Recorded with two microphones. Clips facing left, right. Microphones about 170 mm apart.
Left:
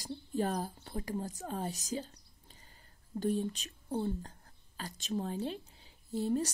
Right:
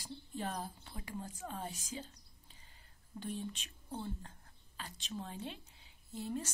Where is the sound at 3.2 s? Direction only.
45° left (ahead or behind).